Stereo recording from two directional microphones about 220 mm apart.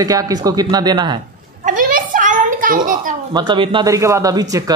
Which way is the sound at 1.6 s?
40° right (ahead or behind).